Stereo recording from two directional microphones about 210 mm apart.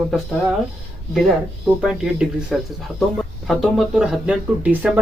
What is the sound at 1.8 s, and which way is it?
Speech, 5° right (ahead or behind).